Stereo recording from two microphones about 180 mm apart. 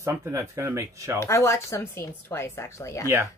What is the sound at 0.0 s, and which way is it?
Speech, 15° right (ahead or behind).